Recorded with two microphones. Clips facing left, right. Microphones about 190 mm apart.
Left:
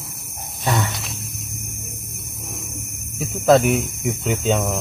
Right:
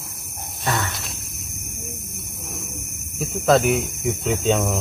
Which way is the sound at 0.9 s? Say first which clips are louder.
Left 2 dB; centre (ahead or behind).